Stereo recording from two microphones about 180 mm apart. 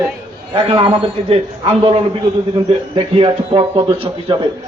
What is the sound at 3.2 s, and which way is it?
A man's voice, 30° right (ahead or behind).